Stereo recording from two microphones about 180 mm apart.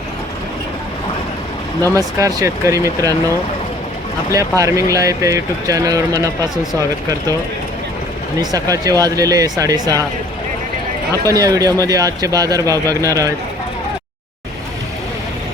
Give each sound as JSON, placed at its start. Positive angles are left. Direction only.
{"t": 2.0, "sound": "speech", "side_deg": -20}
{"t": 4.3, "sound": "speech", "side_deg": -20}
{"t": 8.4, "sound": "speech", "side_deg": -20}
{"t": 11.3, "sound": "speech", "side_deg": -20}